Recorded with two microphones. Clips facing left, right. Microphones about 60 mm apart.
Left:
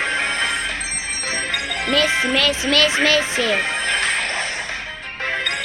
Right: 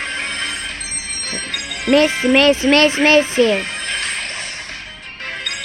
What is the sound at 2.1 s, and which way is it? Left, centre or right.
Speech, left.